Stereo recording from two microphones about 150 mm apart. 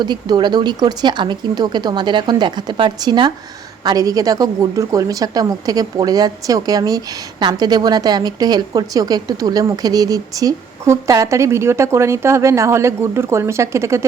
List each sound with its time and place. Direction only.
0.0 s a woman's voice: 30° right (ahead or behind)